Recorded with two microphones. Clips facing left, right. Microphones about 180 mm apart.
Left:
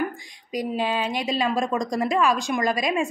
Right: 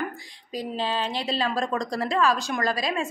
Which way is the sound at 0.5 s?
15° left (ahead or behind).